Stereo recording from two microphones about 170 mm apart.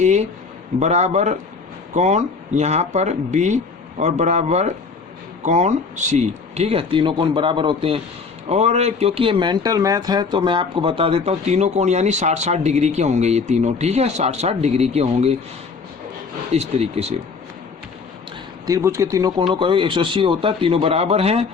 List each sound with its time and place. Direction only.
0.0 s speech: 40° right (ahead or behind)
16.5 s speech: 40° right (ahead or behind)
18.6 s speech: 20° right (ahead or behind); by 21.4 s 35° right (ahead or behind)